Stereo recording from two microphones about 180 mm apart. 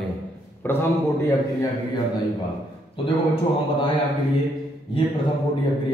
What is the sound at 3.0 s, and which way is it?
Speech, 30° left (ahead or behind).